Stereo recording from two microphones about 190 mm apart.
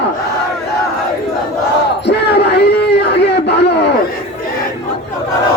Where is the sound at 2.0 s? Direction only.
60° left (ahead or behind).